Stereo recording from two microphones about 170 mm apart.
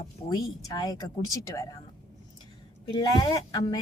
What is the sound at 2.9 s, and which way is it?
Speech, 25° left (ahead or behind).